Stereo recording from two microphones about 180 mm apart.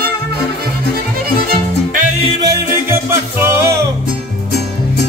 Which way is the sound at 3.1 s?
15° right (ahead or behind).